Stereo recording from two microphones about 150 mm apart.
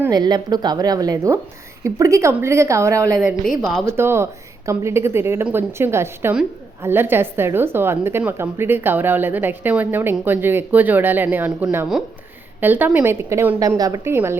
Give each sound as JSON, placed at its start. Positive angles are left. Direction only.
{"t": 0.1, "sound": "a woman's voice", "side_deg": -30}